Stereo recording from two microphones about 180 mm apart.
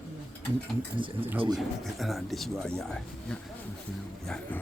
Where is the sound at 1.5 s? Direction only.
Centre (ahead or behind).